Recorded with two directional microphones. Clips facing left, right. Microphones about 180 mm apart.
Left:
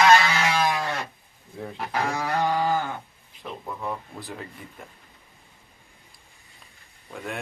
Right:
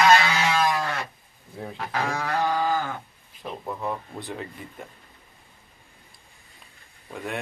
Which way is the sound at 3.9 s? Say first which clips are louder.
Right 1 dB; centre (ahead or behind).